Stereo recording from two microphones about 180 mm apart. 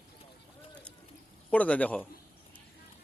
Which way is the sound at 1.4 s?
10° left (ahead or behind).